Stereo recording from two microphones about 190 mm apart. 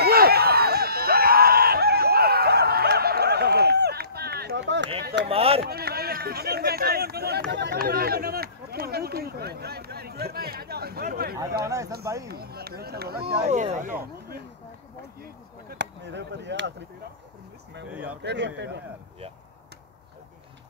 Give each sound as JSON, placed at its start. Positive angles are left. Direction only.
{"t": 0.0, "sound": "screaming", "side_deg": -55}
{"t": 5.0, "sound": "a sound", "side_deg": -60}
{"t": 5.3, "sound": "chop", "side_deg": -30}
{"t": 5.6, "sound": "a sound", "side_deg": -55}
{"t": 11.6, "sound": "speech", "side_deg": -15}
{"t": 12.3, "sound": "speech", "side_deg": -55}
{"t": 13.4, "sound": "speech", "side_deg": -35}
{"t": 15.7, "sound": "speech", "side_deg": -65}
{"t": 17.8, "sound": "speech", "side_deg": -10}
{"t": 18.2, "sound": "speech", "side_deg": -65}